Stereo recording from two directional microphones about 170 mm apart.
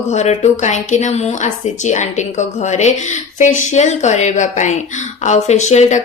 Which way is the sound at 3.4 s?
45° left (ahead or behind).